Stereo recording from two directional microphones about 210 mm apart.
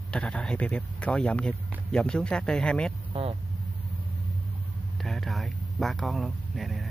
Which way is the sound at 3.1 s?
25° right (ahead or behind).